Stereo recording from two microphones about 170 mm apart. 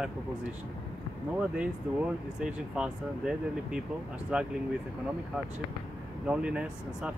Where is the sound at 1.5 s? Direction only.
5° right (ahead or behind).